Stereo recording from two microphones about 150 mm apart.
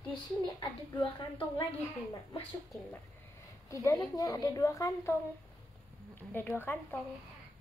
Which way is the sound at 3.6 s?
20° left (ahead or behind).